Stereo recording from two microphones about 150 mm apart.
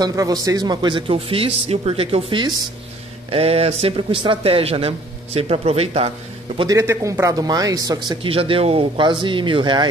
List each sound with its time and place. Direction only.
0.0 s speech: 25° right (ahead or behind); by 6.7 s 40° right (ahead or behind)
6.7 s speech: 20° right (ahead or behind)
8.2 s speech: 35° right (ahead or behind)